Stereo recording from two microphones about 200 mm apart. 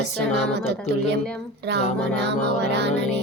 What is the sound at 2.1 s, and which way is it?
Music, 60° right (ahead or behind).